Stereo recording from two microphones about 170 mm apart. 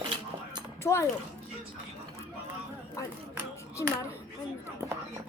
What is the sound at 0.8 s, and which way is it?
Speech, 15° left (ahead or behind).